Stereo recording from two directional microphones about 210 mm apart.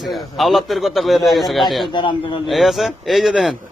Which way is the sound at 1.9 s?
20° left (ahead or behind).